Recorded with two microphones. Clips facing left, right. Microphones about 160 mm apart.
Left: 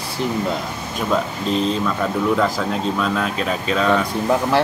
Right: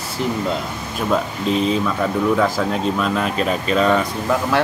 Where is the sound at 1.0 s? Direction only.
5° right (ahead or behind).